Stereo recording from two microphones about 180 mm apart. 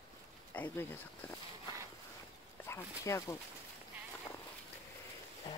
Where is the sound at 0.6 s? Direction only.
10° left (ahead or behind).